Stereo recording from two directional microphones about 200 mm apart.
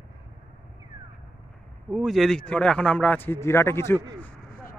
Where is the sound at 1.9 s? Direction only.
Centre (ahead or behind).